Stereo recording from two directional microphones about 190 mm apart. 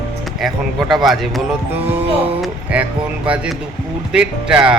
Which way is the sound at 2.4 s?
10° right (ahead or behind).